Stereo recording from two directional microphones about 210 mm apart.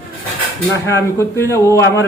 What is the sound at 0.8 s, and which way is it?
Speech, 15° left (ahead or behind).